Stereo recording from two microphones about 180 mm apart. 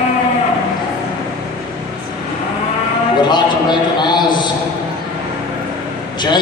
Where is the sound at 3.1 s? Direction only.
25° left (ahead or behind).